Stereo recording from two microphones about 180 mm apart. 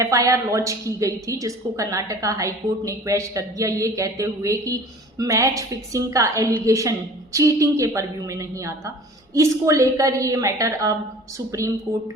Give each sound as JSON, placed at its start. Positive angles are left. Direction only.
{"t": 0.0, "sound": "a woman's voice", "side_deg": -20}